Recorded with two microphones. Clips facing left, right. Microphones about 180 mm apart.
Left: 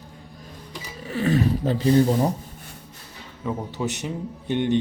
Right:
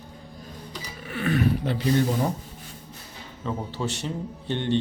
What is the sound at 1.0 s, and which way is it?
Speech, 35° left (ahead or behind).